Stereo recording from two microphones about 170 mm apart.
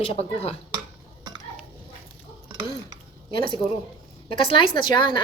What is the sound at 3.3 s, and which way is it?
A woman's voice, 30° left (ahead or behind).